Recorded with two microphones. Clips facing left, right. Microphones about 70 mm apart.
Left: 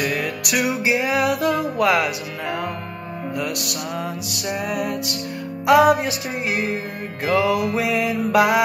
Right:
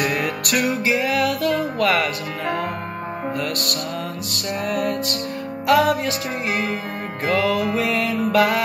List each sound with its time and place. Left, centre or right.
0.0 s music: centre; by 1.6 s left
1.8 s music: centre
5.7 s music: left